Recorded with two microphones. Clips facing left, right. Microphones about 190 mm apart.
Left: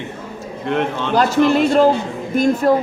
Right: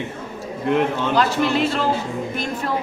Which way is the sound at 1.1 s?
45° left (ahead or behind).